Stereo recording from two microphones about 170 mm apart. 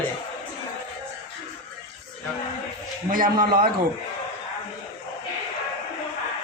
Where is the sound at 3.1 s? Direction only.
55° right (ahead or behind).